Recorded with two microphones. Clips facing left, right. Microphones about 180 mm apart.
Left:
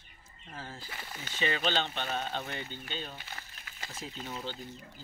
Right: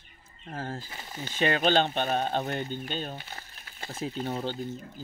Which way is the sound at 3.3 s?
35° right (ahead or behind).